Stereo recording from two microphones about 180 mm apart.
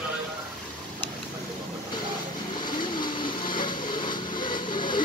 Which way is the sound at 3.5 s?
25° left (ahead or behind).